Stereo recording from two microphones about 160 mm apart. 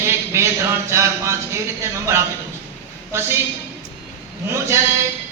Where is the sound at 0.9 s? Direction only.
15° right (ahead or behind).